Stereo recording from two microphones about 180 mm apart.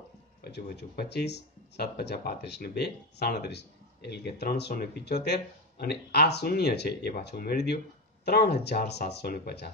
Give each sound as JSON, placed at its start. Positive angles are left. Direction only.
{"t": 0.4, "sound": "speech", "side_deg": 65}